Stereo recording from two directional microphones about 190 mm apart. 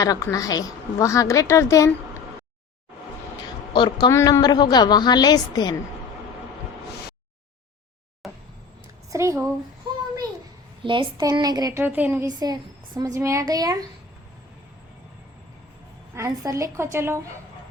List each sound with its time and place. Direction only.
0.0 s a woman's voice: 20° left (ahead or behind)
3.7 s a woman's voice: 25° left (ahead or behind)
8.2 s a sound: centre (ahead or behind)
9.0 s a woman's voice: 15° right (ahead or behind)
10.8 s a woman's voice: 20° right (ahead or behind)
16.1 s a woman's voice: 15° right (ahead or behind)